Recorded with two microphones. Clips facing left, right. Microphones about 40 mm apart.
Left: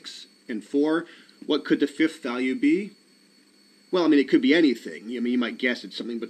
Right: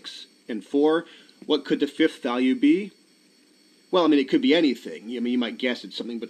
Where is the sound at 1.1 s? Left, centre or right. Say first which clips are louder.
Right 1 dB; centre.